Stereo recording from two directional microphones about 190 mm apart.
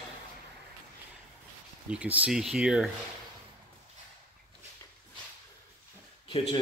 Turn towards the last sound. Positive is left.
turn(degrees=25)  # may be behind; listen again after turning